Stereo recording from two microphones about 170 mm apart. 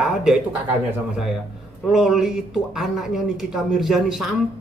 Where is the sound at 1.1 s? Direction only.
5° right (ahead or behind).